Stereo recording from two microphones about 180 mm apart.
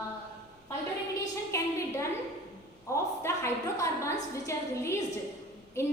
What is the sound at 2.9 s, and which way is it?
A woman's voice, 15° left (ahead or behind).